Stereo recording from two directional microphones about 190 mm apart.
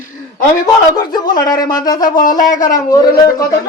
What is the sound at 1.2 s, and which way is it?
Speech, 20° left (ahead or behind).